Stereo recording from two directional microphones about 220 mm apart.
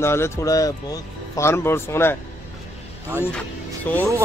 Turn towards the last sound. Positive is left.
turn(degrees=5)  # may be behind; listen again after turning